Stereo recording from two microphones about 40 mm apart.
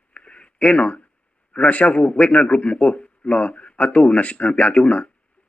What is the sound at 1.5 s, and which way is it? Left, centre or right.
A man's voice, left.